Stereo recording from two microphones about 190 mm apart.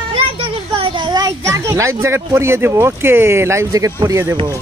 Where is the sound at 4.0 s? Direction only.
15° right (ahead or behind).